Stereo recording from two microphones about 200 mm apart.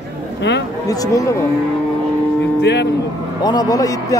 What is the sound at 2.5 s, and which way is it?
Speech, 60° left (ahead or behind).